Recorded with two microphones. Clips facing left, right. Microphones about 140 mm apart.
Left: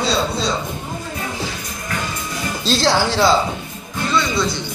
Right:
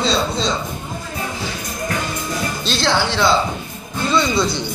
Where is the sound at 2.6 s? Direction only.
40° left (ahead or behind).